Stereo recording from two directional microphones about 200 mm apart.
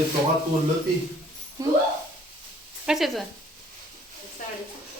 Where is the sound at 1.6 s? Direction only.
15° right (ahead or behind).